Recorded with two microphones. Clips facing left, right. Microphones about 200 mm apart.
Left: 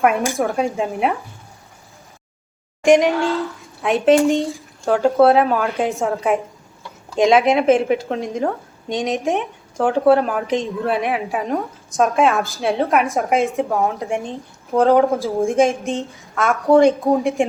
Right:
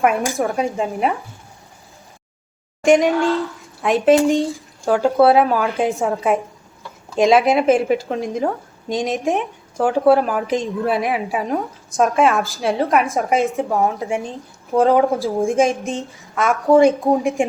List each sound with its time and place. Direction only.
0.0 s a woman's voice: centre (ahead or behind)
2.8 s a woman's voice: centre (ahead or behind)